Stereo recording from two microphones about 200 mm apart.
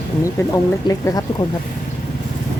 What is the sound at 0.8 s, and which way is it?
Speech, 20° left (ahead or behind).